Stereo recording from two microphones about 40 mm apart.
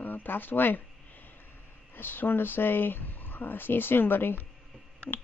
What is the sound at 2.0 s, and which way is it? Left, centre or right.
Speech, left.